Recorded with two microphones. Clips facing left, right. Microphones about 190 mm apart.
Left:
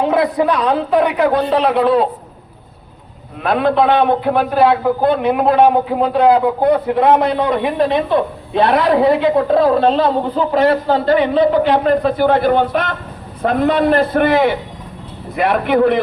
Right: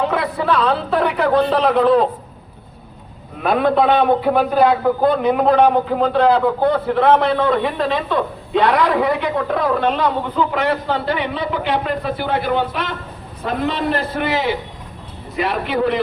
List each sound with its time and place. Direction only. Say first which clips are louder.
0.0 s a man's voice: left 5 dB; 20° left (ahead or behind)
3.4 s a man's voice: left 1 dB; centre (ahead or behind); by 16.0 s 55° left (ahead or behind)